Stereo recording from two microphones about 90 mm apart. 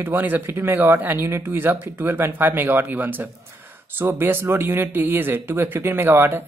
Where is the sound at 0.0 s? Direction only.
20° right (ahead or behind).